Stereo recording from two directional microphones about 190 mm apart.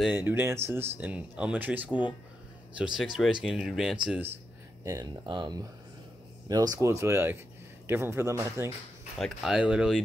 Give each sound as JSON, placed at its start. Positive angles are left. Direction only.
{"t": 0.0, "sound": "speech", "side_deg": -10}
{"t": 4.8, "sound": "speech", "side_deg": -20}
{"t": 9.2, "sound": "speech", "side_deg": 0}